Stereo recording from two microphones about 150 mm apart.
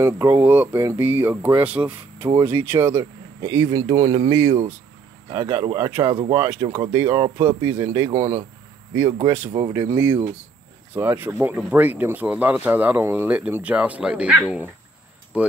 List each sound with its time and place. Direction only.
0.0 s speech: 20° right (ahead or behind)